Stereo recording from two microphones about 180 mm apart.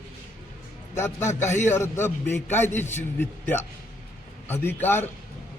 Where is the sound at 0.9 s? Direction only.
15° left (ahead or behind).